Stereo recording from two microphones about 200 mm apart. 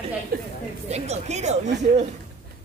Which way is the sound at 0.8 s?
35° right (ahead or behind).